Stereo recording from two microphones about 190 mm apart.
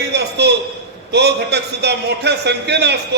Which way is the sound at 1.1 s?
60° right (ahead or behind).